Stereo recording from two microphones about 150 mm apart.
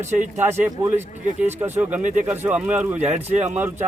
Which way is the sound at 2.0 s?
60° right (ahead or behind).